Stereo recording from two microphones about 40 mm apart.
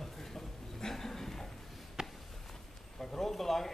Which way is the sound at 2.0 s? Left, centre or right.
Centre.